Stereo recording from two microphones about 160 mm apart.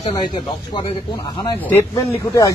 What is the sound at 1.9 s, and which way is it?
Speech, 20° left (ahead or behind).